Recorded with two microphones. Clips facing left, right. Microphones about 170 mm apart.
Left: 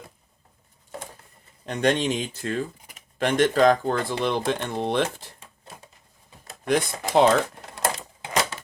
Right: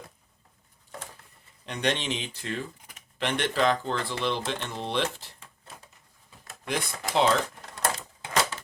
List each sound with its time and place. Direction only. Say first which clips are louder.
1.6 s speech: left 6 dB; 45° left (ahead or behind)
6.7 s speech: left 8 dB; 50° left (ahead or behind)